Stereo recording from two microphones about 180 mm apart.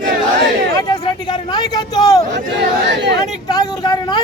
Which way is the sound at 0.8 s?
25° left (ahead or behind).